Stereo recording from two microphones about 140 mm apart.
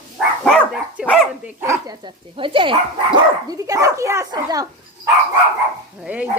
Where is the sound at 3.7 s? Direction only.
20° right (ahead or behind).